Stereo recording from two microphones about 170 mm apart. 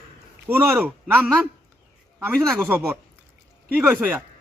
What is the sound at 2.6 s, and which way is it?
Speech, 15° right (ahead or behind).